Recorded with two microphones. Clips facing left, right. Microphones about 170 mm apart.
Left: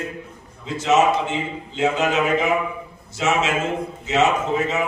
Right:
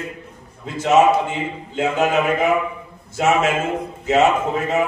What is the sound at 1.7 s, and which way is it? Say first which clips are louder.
Speech: right 2 dB; 55° right (ahead or behind).